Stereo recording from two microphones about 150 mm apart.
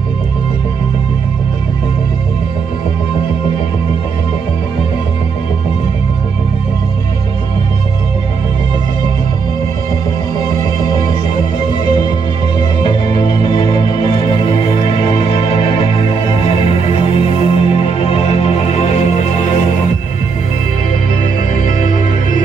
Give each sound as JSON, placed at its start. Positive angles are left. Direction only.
{"t": 12.8, "sound": "music", "side_deg": 30}
{"t": 21.6, "sound": "music", "side_deg": 60}